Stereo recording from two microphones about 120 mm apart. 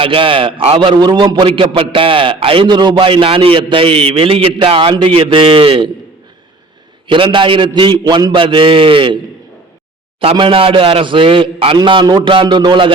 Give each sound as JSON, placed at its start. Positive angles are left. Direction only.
{"t": 0.0, "sound": "a man's voice", "side_deg": -50}
{"t": 7.1, "sound": "a man's voice", "side_deg": -45}
{"t": 10.2, "sound": "a man's voice", "side_deg": -45}
{"t": 11.8, "sound": "a man's voice", "side_deg": -40}